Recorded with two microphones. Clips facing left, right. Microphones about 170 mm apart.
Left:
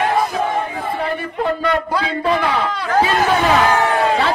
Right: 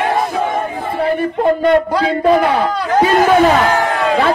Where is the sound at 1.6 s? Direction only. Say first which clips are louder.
Right 7 dB; 45° right (ahead or behind).